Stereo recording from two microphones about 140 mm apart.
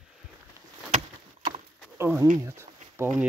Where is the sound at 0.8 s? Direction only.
55° right (ahead or behind).